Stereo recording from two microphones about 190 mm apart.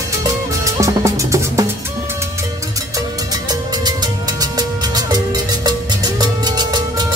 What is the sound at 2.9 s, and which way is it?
Music, 20° right (ahead or behind).